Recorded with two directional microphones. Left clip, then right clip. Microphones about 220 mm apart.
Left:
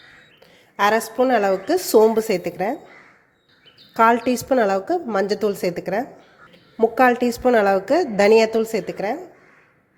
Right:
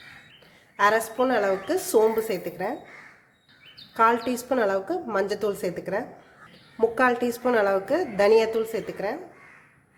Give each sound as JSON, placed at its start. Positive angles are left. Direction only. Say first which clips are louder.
{"t": 0.8, "sound": "a woman's voice", "louder": "left 3 dB", "side_deg": 25}
{"t": 3.9, "sound": "a woman's voice", "louder": "left 5 dB", "side_deg": 25}